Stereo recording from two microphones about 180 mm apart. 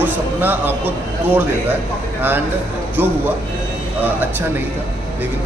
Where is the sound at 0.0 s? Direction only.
10° right (ahead or behind).